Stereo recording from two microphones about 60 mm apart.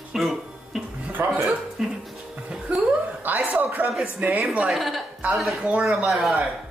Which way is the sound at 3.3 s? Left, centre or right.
Right.